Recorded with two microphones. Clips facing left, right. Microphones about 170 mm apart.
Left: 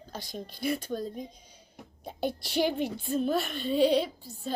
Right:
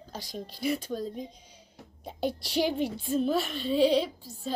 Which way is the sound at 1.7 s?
55° left (ahead or behind).